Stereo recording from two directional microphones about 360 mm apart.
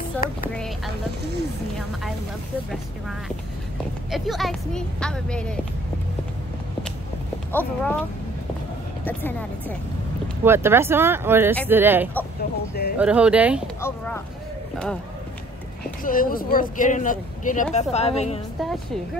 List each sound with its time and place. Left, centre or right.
0.2 s speech: left
4.1 s speech: centre
7.5 s speech: centre
9.0 s speech: centre
10.2 s speech: centre
12.4 s speech: left
12.9 s speech: centre
13.7 s speech: centre
16.0 s speech: left